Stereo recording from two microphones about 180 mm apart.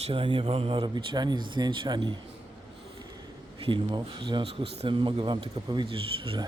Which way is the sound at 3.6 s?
30° right (ahead or behind).